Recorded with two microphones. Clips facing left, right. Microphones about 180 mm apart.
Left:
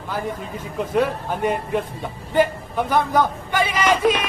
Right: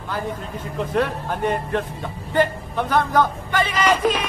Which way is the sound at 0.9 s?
10° left (ahead or behind).